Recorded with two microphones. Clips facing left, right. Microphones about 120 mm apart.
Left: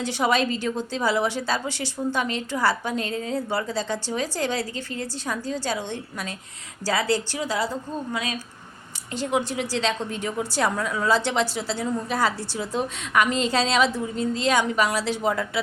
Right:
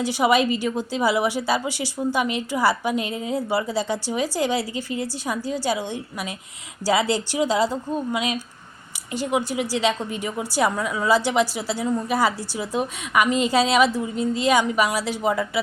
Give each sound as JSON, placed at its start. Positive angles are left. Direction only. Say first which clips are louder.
{"t": 0.0, "sound": "a woman's voice", "louder": "right 3 dB", "side_deg": -5}
{"t": 9.1, "sound": "a woman's voice", "louder": "right 2 dB", "side_deg": -5}